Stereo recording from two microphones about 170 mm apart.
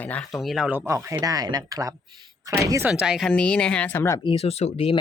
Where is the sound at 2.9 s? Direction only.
5° right (ahead or behind); by 4.2 s 15° left (ahead or behind).